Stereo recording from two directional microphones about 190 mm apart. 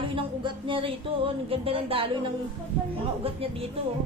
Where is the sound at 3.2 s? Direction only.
30° right (ahead or behind).